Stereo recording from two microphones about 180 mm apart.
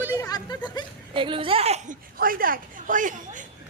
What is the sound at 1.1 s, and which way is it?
Speech, 30° right (ahead or behind).